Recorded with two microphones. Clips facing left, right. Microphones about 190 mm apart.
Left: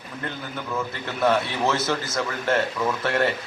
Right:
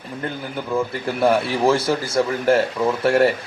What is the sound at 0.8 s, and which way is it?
A man's voice, 30° right (ahead or behind).